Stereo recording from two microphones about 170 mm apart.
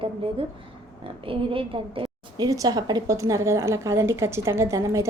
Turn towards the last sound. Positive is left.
turn(degrees=-15)  # may be behind; listen again after turning